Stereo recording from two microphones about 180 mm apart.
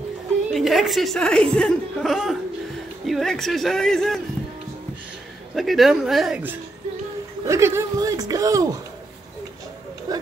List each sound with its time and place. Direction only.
0.5 s speech: centre (ahead or behind)
5.5 s speech: centre (ahead or behind)
7.4 s speech: 15° right (ahead or behind)
10.1 s speech: 20° right (ahead or behind)